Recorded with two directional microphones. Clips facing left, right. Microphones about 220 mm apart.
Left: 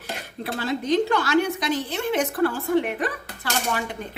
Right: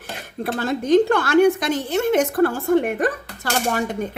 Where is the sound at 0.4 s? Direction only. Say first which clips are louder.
Right 4 dB; 50° right (ahead or behind).